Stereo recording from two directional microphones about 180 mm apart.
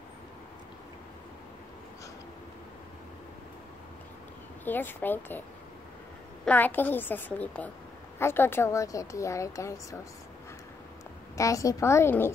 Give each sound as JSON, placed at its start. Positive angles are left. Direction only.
{"t": 4.6, "sound": "speech", "side_deg": 10}
{"t": 6.4, "sound": "speech", "side_deg": 10}
{"t": 11.3, "sound": "speech", "side_deg": 15}